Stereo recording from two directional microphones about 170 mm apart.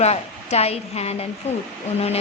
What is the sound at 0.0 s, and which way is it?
A woman's voice, 40° left (ahead or behind).